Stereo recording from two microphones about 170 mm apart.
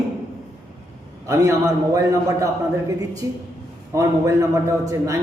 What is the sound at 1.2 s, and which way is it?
A man's voice, 15° right (ahead or behind).